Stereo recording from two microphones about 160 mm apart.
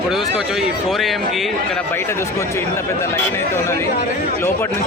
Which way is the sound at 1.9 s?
15° left (ahead or behind).